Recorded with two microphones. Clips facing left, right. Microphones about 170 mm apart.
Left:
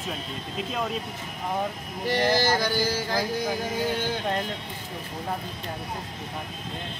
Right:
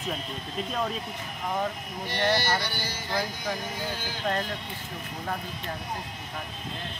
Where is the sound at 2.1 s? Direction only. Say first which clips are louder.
Left 4 dB; 90° left.